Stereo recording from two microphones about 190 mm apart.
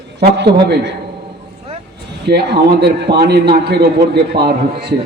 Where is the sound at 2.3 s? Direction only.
60° right (ahead or behind).